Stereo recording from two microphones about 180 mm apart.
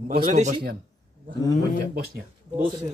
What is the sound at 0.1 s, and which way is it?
Speech, 45° right (ahead or behind).